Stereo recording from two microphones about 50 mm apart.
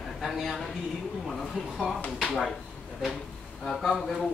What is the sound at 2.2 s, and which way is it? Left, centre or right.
Speech, centre.